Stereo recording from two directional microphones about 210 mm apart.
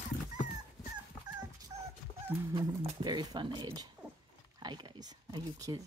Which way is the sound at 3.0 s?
20° right (ahead or behind).